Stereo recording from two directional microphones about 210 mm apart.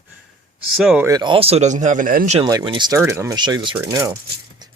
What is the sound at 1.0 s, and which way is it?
Speech, 20° right (ahead or behind).